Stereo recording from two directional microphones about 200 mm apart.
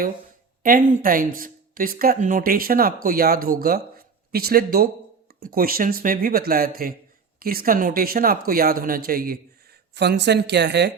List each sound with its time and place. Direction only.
0.6 s speech: 40° right (ahead or behind); by 10.9 s 60° right (ahead or behind)